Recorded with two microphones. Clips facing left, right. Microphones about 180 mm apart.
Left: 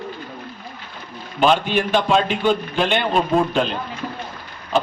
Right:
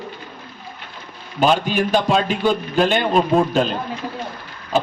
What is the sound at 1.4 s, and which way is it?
A man's voice, 40° right (ahead or behind).